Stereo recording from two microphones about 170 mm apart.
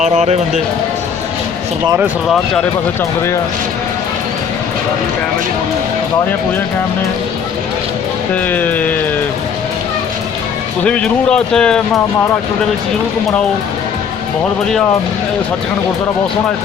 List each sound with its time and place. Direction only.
0.0 s speech: 40° right (ahead or behind)
8.4 s music: 10° left (ahead or behind)
10.8 s speech: 5° left (ahead or behind)